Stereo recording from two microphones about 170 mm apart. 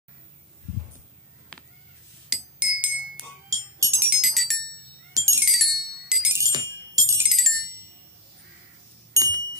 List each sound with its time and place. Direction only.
1.5 s a sound: 5° left (ahead or behind)
2.2 s music: 5° right (ahead or behind)
3.4 s ringtone: 20° right (ahead or behind); by 4.6 s centre (ahead or behind)
5.1 s music: 15° right (ahead or behind)
5.4 s music: centre (ahead or behind)
6.5 s music: 20° right (ahead or behind)
7.2 s music: centre (ahead or behind)
9.1 s a sound: 20° right (ahead or behind)